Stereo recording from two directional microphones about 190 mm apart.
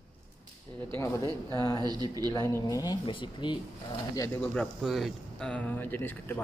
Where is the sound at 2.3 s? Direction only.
15° left (ahead or behind).